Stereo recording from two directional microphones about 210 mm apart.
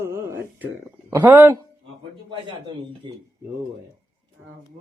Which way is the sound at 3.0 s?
20° right (ahead or behind).